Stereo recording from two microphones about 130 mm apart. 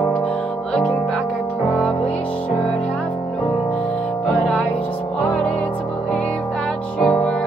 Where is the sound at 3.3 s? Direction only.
60° left (ahead or behind).